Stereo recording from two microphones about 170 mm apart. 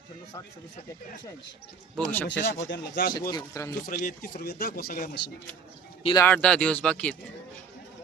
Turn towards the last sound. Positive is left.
turn(degrees=5)  # may be behind; listen again after turning